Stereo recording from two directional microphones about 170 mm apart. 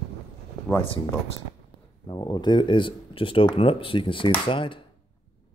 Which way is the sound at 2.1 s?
25° left (ahead or behind).